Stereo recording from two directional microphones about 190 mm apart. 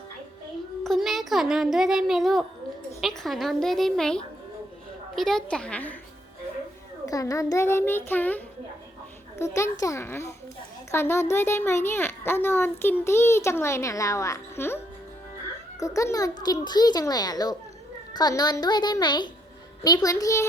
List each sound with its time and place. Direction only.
0.9 s a child's voice: centre (ahead or behind)
7.0 s a child's voice: 20° left (ahead or behind)
15.8 s a child's voice: 15° left (ahead or behind)